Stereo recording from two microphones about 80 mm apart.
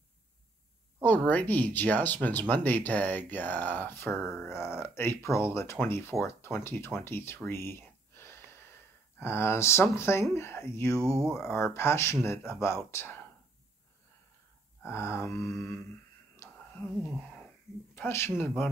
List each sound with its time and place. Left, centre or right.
1.0 s speech: left
8.1 s wheeze: left
9.2 s speech: left
11.0 s speech: right
11.4 s speech: left
14.8 s speech: left
17.2 s wheeze: centre
17.9 s speech: left